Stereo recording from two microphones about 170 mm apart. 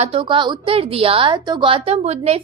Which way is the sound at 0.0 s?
35° right (ahead or behind).